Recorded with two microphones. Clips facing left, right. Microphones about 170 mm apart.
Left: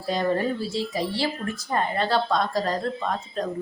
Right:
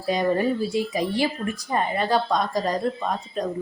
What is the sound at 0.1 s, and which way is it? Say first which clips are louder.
Speech: right 2 dB; 15° right (ahead or behind).